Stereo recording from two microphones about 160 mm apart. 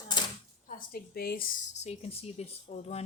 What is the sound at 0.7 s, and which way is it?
Speech, 70° left (ahead or behind).